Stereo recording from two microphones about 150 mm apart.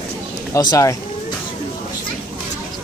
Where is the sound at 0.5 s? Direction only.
25° left (ahead or behind).